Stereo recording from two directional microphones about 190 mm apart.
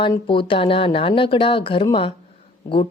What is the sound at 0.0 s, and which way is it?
Speech, 25° left (ahead or behind).